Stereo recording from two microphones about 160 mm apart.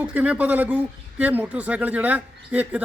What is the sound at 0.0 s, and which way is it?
Speech, 10° right (ahead or behind).